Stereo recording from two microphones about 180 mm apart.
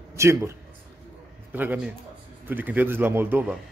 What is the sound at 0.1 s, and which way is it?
Speech, 15° right (ahead or behind).